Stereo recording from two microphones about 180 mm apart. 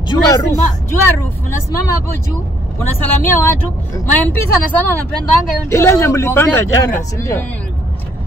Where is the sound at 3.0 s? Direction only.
15° left (ahead or behind).